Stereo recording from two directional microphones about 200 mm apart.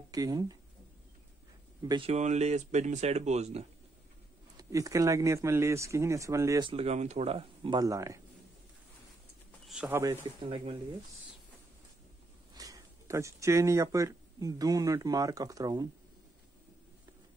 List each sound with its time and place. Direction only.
0.1 s speech: 20° right (ahead or behind)
1.8 s speech: 25° right (ahead or behind)
4.6 s speech: 15° right (ahead or behind)
6.7 s speech: 30° right (ahead or behind); by 8.2 s 15° right (ahead or behind)
9.7 s speech: 5° right (ahead or behind)
10.5 s speech: 25° right (ahead or behind)
12.5 s speech: 15° right (ahead or behind)